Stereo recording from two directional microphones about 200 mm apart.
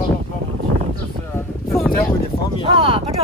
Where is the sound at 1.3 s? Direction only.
10° left (ahead or behind).